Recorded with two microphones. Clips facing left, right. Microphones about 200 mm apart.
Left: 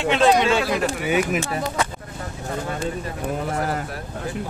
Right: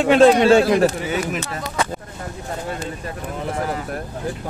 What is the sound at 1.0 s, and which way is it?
Speech, 15° left (ahead or behind).